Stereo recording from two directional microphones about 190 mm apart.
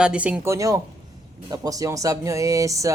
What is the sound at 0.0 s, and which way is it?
Speech, 5° right (ahead or behind).